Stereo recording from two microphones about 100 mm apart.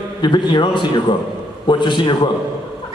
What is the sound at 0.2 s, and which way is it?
A woman's voice, 50° left (ahead or behind).